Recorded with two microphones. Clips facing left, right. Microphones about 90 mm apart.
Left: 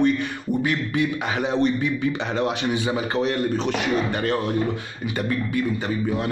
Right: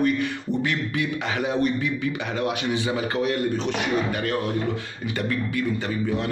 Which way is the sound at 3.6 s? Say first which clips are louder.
Left 2 dB; 35° left (ahead or behind).